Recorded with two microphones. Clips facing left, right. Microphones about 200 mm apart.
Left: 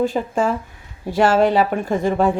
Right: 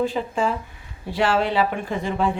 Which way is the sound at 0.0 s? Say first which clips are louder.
Left 3 dB; 45° left (ahead or behind).